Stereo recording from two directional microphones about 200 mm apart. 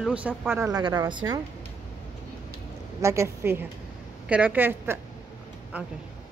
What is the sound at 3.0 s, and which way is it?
Speech, 15° right (ahead or behind).